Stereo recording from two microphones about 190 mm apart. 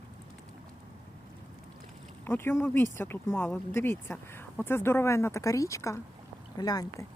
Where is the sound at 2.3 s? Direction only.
10° left (ahead or behind).